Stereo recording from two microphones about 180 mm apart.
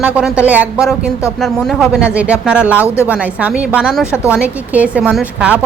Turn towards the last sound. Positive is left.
turn(degrees=-5)  # may be behind; listen again after turning